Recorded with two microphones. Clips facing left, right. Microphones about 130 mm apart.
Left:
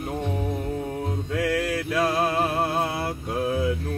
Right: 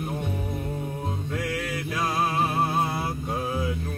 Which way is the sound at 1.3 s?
70° left (ahead or behind).